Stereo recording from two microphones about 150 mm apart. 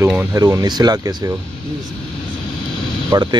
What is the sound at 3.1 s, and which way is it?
Speech, 30° right (ahead or behind).